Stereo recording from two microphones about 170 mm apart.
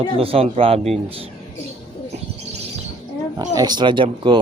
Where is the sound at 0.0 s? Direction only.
35° right (ahead or behind).